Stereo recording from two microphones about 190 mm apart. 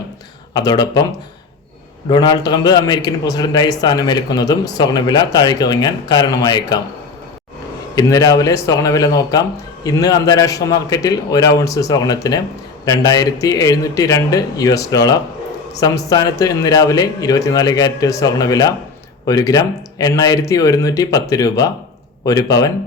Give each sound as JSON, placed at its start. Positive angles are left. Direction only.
{"t": 0.5, "sound": "a man's voice", "side_deg": 20}
{"t": 2.0, "sound": "a man's voice", "side_deg": 20}
{"t": 7.9, "sound": "a man's voice", "side_deg": 20}